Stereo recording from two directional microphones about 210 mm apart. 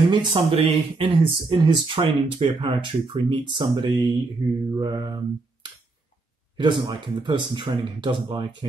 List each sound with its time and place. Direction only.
0.1 s speech: 20° right (ahead or behind)
4.6 s a sound: 20° right (ahead or behind)
6.5 s speech: 20° right (ahead or behind)